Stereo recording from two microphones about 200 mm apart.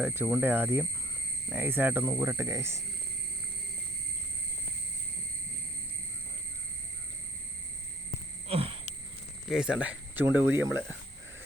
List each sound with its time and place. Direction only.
0.0 s speech: 10° right (ahead or behind)
8.4 s a sound: 30° right (ahead or behind)
9.5 s speech: 5° right (ahead or behind)